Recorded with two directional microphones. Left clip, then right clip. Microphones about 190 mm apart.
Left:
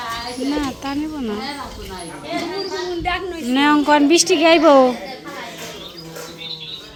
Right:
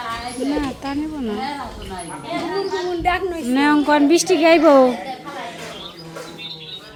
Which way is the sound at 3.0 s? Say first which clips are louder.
Right 5 dB; 40° right (ahead or behind).